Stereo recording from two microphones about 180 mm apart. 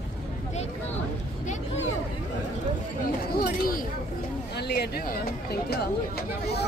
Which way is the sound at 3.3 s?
55° left (ahead or behind).